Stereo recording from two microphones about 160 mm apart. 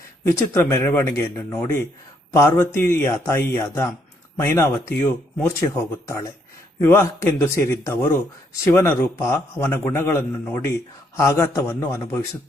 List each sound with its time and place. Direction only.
0.3 s a man's voice: 15° left (ahead or behind)